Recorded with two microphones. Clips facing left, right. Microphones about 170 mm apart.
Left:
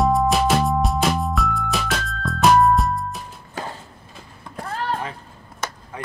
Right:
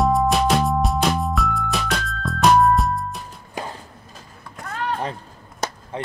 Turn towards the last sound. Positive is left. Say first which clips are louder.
# right 3 dB
turn(degrees=-30)  # may be behind; listen again after turning